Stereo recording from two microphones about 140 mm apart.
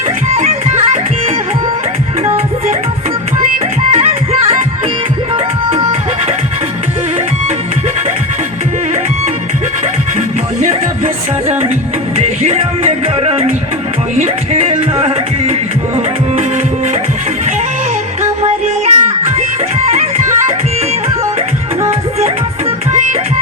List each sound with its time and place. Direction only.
0.3 s music: 50° right (ahead or behind)
3.9 s music: 45° right (ahead or behind)
10.2 s music: 60° right (ahead or behind)
18.2 s music: 50° right (ahead or behind)